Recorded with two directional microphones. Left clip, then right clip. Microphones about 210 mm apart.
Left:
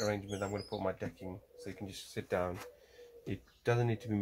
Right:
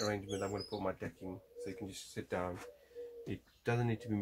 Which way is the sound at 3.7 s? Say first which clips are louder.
Left 4 dB; 30° left (ahead or behind).